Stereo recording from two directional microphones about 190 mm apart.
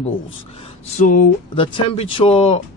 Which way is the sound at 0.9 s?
45° left (ahead or behind).